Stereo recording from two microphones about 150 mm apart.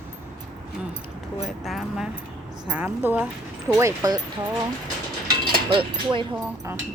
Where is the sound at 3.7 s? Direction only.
20° right (ahead or behind).